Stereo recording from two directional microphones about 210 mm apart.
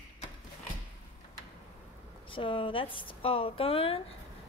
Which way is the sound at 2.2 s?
25° left (ahead or behind).